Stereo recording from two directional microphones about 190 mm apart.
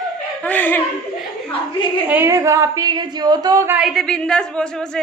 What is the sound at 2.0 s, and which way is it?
A woman's voice, 10° right (ahead or behind).